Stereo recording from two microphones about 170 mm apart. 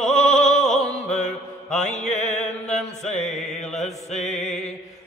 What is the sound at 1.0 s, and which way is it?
Mantra, 5° left (ahead or behind).